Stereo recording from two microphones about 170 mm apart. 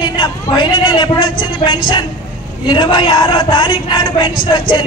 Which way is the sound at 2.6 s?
30° left (ahead or behind).